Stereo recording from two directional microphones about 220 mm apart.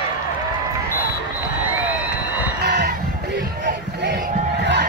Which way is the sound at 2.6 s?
50° right (ahead or behind).